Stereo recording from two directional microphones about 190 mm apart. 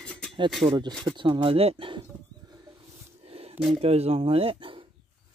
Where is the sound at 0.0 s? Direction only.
5° left (ahead or behind).